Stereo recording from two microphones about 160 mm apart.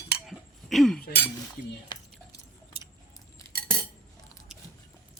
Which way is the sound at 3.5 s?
70° right (ahead or behind).